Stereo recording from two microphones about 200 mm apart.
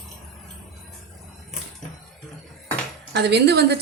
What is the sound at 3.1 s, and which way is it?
Speech, 55° right (ahead or behind).